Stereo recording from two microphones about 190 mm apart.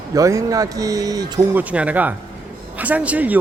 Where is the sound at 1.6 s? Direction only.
5° right (ahead or behind).